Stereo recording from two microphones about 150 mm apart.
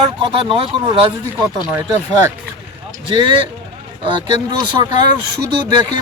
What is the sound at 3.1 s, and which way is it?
Speech, 35° right (ahead or behind).